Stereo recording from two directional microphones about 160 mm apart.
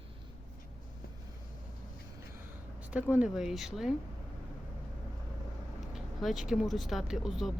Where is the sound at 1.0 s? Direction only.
70° left (ahead or behind).